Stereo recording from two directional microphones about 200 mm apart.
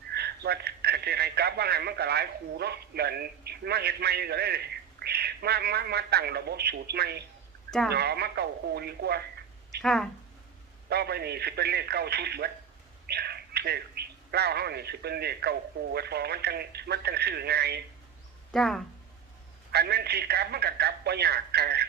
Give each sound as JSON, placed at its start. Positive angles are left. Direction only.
{"t": 0.1, "sound": "a man's voice", "side_deg": -55}
{"t": 9.8, "sound": "speech", "side_deg": 0}
{"t": 10.8, "sound": "speech", "side_deg": -55}
{"t": 18.5, "sound": "speech", "side_deg": 0}
{"t": 19.7, "sound": "speech", "side_deg": -55}